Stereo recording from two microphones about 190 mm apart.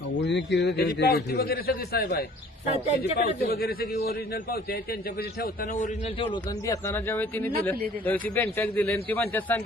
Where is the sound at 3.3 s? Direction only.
55° left (ahead or behind); by 6.3 s 30° left (ahead or behind).